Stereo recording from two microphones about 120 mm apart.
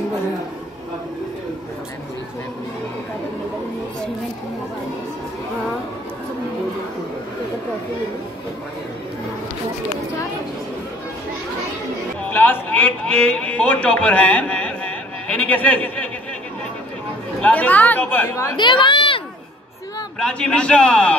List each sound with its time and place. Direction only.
12.2 s a man's voice: 15° left (ahead or behind)
17.4 s a man's voice: 10° left (ahead or behind)
18.6 s speech: 40° left (ahead or behind)
20.2 s a man's voice: 10° left (ahead or behind)